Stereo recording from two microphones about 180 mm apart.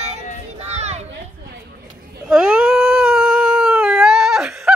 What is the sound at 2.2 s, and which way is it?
Cat, 5° right (ahead or behind).